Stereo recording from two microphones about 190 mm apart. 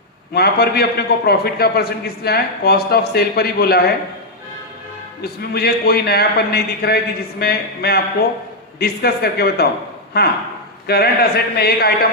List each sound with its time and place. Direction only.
0.3 s a man's voice: 55° left (ahead or behind)
5.2 s a man's voice: 55° left (ahead or behind)